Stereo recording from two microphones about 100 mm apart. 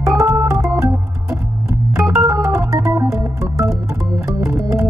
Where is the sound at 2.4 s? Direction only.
30° right (ahead or behind).